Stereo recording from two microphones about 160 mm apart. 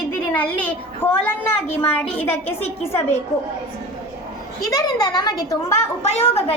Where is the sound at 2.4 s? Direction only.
40° left (ahead or behind).